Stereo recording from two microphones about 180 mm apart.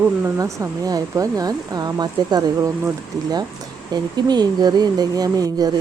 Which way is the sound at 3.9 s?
25° right (ahead or behind).